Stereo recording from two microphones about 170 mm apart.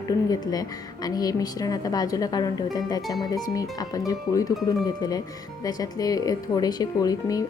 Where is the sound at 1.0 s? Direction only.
20° left (ahead or behind).